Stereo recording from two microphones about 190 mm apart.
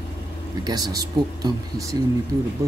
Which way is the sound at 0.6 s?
20° right (ahead or behind).